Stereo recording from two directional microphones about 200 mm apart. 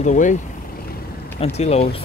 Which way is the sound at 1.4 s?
30° left (ahead or behind).